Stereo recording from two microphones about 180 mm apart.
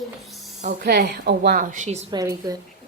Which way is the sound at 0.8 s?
60° right (ahead or behind).